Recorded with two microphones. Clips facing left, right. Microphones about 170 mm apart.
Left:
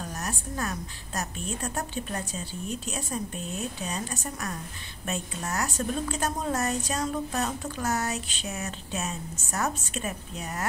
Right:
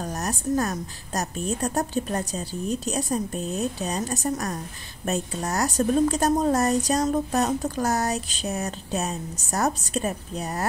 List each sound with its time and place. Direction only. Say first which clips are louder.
0.0 s a woman's voice: right 6 dB; 40° right (ahead or behind)